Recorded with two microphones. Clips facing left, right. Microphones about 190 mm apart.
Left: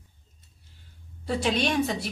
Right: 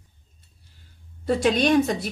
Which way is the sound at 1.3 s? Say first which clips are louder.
Right 6 dB; 50° right (ahead or behind).